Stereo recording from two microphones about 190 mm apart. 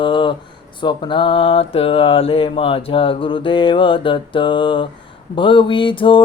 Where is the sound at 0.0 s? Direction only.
25° left (ahead or behind).